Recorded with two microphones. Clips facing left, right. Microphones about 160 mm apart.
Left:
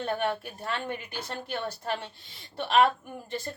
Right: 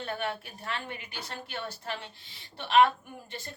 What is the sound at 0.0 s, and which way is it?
A woman's voice, 45° left (ahead or behind).